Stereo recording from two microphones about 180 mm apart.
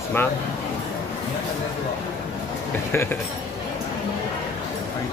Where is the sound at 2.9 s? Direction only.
15° left (ahead or behind).